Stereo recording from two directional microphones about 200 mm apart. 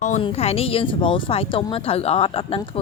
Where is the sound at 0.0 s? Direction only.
35° left (ahead or behind).